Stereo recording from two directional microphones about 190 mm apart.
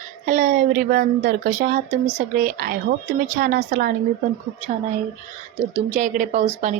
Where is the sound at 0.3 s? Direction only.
45° right (ahead or behind).